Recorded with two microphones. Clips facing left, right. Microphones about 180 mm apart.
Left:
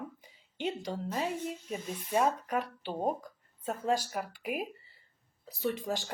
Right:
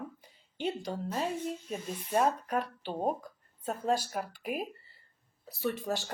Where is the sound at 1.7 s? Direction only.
5° left (ahead or behind).